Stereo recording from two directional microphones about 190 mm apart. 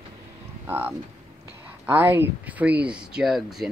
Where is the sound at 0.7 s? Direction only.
10° right (ahead or behind).